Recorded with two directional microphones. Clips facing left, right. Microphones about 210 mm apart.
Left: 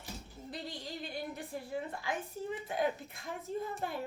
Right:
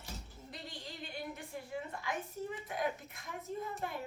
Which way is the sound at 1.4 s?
35° left (ahead or behind).